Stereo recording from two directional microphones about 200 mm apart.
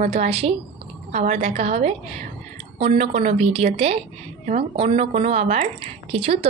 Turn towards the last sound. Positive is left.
turn(degrees=-30)  # may be behind; listen again after turning